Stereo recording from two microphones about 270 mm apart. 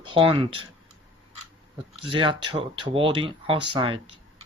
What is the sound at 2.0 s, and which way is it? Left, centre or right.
Speech, centre.